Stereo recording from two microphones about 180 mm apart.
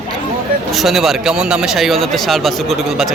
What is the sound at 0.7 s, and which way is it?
Speech, centre (ahead or behind).